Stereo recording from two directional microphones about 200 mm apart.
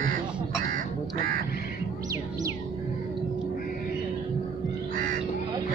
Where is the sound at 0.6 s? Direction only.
45° right (ahead or behind).